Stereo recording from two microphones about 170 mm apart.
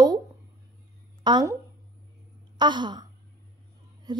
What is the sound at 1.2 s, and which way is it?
Speech, 25° right (ahead or behind).